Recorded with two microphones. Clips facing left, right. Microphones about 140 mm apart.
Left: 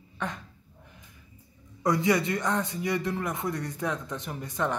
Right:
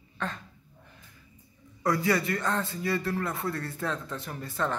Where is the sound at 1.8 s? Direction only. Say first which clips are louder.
Left 2 dB; 20° left (ahead or behind).